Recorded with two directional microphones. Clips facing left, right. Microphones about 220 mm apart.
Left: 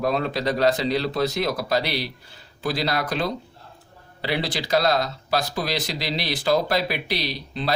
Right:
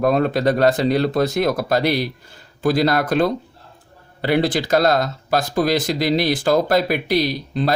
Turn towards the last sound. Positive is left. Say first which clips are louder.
# right 6 dB
turn(degrees=-45)  # may be behind; listen again after turning